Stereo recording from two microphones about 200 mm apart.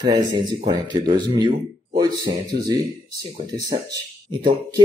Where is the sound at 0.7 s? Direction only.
20° right (ahead or behind).